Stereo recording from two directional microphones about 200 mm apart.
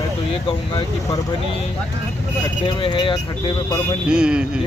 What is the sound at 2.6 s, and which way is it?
Speech, 25° left (ahead or behind).